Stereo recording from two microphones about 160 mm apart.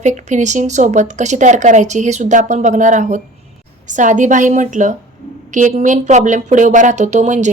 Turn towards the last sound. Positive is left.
turn(degrees=-50)  # may be behind; listen again after turning